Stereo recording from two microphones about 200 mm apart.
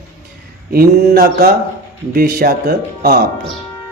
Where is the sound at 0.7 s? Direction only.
50° right (ahead or behind).